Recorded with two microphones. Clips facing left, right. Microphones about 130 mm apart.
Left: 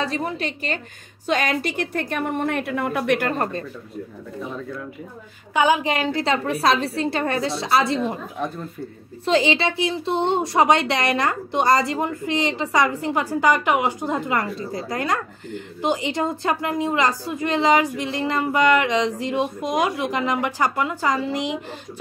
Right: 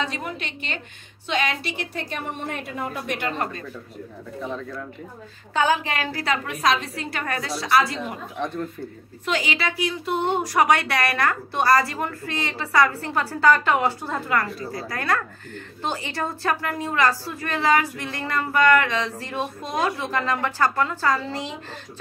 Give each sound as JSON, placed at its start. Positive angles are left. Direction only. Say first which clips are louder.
{"t": 0.0, "sound": "a woman's voice", "louder": "left 4 dB", "side_deg": 35}
{"t": 3.2, "sound": "a woman's voice", "louder": "left 4 dB", "side_deg": 45}
{"t": 5.5, "sound": "speech", "louder": "left 3 dB", "side_deg": 15}
{"t": 9.2, "sound": "speech", "louder": "left 6 dB", "side_deg": 25}